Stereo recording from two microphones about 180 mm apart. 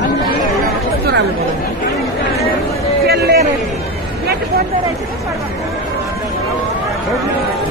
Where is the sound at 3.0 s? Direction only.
65° right (ahead or behind).